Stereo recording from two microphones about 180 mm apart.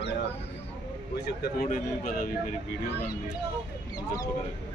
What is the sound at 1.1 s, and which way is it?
Speech, 65° left (ahead or behind).